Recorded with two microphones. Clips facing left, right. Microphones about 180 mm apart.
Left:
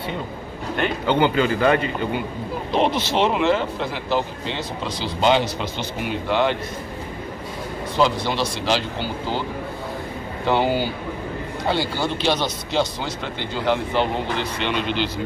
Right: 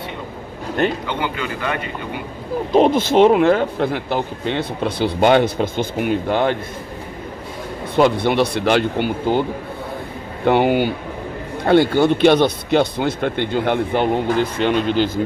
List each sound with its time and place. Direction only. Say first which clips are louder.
1.0 s speech: left 6 dB; 30° left (ahead or behind)
2.7 s speech: right 7 dB; 45° right (ahead or behind)
7.9 s speech: right 6 dB; 60° right (ahead or behind)
10.4 s speech: right 5 dB; 60° right (ahead or behind)